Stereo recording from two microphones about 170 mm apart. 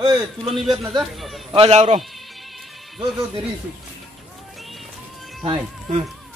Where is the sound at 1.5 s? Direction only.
35° right (ahead or behind).